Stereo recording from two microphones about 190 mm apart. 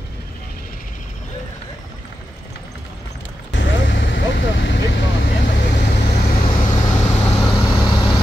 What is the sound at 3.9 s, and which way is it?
Vehicle, 70° left (ahead or behind).